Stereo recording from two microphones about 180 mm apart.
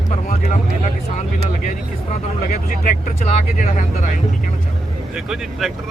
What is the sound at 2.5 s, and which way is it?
Speech, 45° left (ahead or behind).